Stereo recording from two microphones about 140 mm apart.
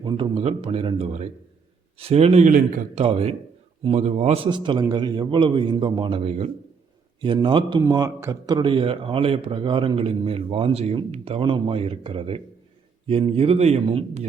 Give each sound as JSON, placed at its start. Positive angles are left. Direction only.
{"t": 0.0, "sound": "a man's voice", "side_deg": -35}
{"t": 3.0, "sound": "a man's voice", "side_deg": -45}
{"t": 7.2, "sound": "a man's voice", "side_deg": -35}